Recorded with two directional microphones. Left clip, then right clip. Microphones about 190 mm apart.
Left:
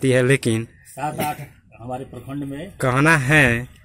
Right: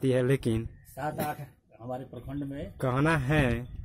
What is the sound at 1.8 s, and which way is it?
Speech, 20° right (ahead or behind).